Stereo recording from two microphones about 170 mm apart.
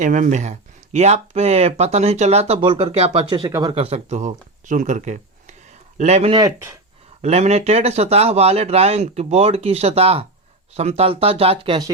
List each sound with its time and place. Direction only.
0.0 s speech: 45° right (ahead or behind)
6.3 s speech: 20° right (ahead or behind)
7.2 s speech: 40° right (ahead or behind)